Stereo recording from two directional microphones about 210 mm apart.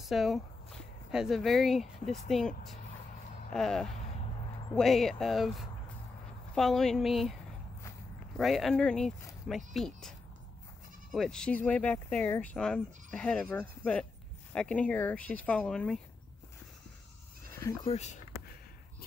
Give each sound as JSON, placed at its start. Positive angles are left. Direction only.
{"t": 0.0, "sound": "speech", "side_deg": 0}
{"t": 8.4, "sound": "speech", "side_deg": 0}
{"t": 17.8, "sound": "speech", "side_deg": 30}